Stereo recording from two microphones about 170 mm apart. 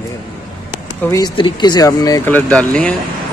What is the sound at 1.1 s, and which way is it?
Speech, 25° left (ahead or behind).